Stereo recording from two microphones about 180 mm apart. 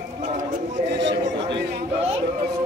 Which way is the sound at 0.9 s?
80° right.